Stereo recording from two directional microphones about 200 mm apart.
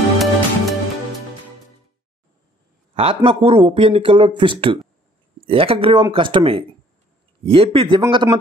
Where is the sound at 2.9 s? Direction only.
30° right (ahead or behind).